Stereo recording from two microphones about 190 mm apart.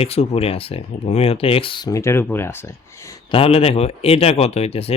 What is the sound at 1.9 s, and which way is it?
Speech, 15° left (ahead or behind).